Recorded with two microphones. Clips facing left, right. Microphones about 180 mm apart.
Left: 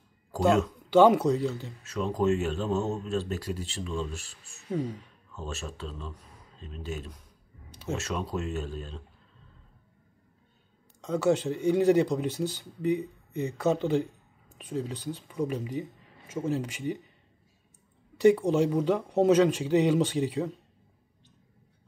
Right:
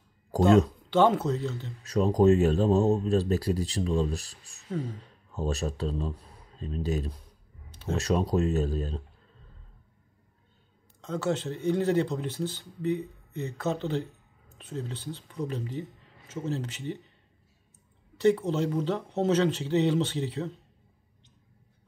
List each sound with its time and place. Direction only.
0.8 s speech: 10° left (ahead or behind)
1.9 s speech: 40° right (ahead or behind)
4.6 s speech: 10° left (ahead or behind)
5.3 s speech: 40° right (ahead or behind)
11.0 s speech: 10° left (ahead or behind)
18.1 s speech: 10° left (ahead or behind)